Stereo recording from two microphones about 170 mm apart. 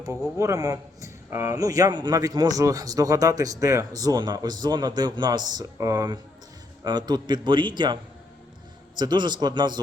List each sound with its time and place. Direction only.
0.3 s a man's voice: 20° right (ahead or behind)
9.0 s a man's voice: 25° right (ahead or behind)